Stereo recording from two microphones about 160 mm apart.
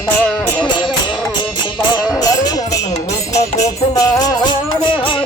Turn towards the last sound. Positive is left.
turn(degrees=20)  # may be behind; listen again after turning